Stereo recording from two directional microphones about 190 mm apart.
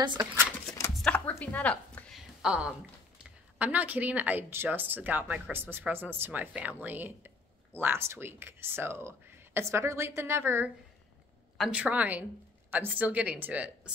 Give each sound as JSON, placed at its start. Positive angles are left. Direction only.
{"t": 0.0, "sound": "speech", "side_deg": -25}
{"t": 1.0, "sound": "a sound", "side_deg": 5}
{"t": 3.5, "sound": "a woman's voice", "side_deg": -10}